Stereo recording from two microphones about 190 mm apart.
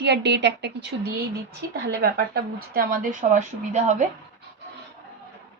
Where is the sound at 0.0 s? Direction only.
65° right (ahead or behind); by 4.0 s 40° right (ahead or behind).